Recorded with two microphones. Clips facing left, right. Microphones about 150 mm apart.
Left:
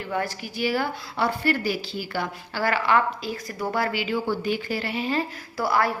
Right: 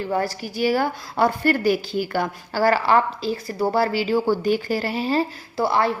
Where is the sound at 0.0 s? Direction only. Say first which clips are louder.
Right 5 dB; 35° right (ahead or behind).